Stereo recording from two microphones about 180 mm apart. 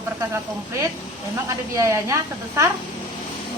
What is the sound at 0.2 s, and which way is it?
Speech, 20° right (ahead or behind).